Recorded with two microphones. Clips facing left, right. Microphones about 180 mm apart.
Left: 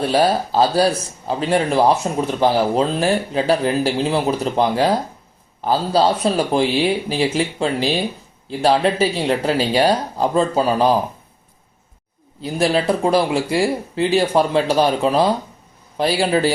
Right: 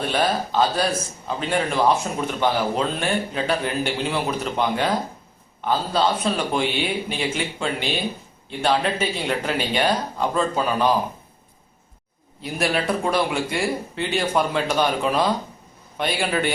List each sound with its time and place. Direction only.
0.0 s speech: 35° left (ahead or behind)
12.4 s speech: 30° left (ahead or behind)